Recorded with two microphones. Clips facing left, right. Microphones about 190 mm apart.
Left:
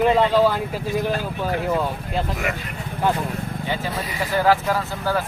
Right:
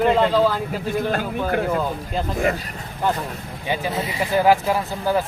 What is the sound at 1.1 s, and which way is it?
Speech, 55° right (ahead or behind).